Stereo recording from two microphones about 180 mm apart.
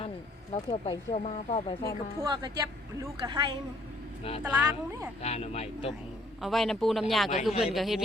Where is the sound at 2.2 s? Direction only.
25° right (ahead or behind).